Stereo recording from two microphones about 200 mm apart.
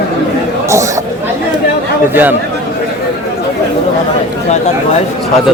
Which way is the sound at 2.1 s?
10° right (ahead or behind).